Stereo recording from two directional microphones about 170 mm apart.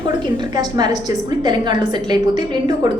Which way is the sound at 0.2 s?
25° right (ahead or behind).